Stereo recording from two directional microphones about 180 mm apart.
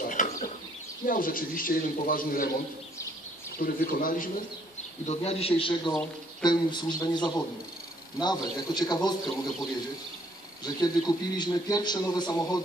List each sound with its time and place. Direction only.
0.0 s a sound: 45° left (ahead or behind)
1.0 s speech: 50° left (ahead or behind)
3.5 s speech: 50° left (ahead or behind)
5.0 s a man's voice: 35° left (ahead or behind)
10.6 s a man's voice: 20° left (ahead or behind)